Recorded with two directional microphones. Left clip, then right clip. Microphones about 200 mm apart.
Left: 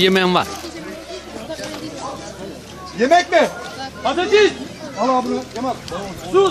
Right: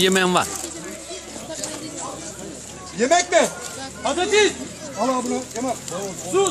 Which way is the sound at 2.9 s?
45° right (ahead or behind).